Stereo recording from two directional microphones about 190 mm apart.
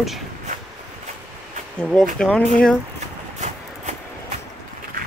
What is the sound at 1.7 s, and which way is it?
Speech, 5° left (ahead or behind).